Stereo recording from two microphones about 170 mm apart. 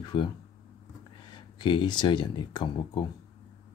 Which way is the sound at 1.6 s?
25° left (ahead or behind).